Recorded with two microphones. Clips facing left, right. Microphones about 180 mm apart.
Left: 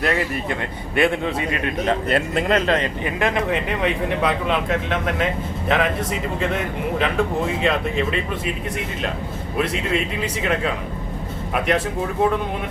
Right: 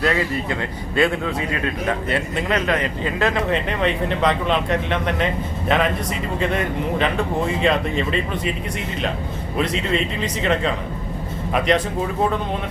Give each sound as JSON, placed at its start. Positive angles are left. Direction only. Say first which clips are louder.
{"t": 0.9, "sound": "a man's voice", "louder": "even", "side_deg": 25}
{"t": 2.1, "sound": "speech", "louder": "left 3 dB", "side_deg": 45}
{"t": 2.6, "sound": "speech", "louder": "left 1 dB", "side_deg": 30}
{"t": 9.6, "sound": "speech", "louder": "right 1 dB", "side_deg": 5}